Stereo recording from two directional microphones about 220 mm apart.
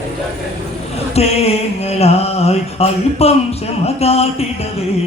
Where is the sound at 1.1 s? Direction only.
30° left (ahead or behind).